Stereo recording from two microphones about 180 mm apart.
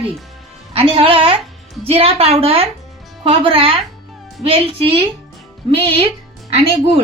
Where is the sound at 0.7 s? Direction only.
30° right (ahead or behind).